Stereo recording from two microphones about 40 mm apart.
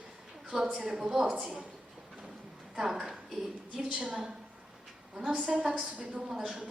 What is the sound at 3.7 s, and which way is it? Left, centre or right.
Speech, right.